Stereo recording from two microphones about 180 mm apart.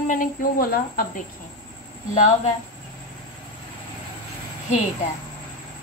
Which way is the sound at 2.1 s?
40° left (ahead or behind).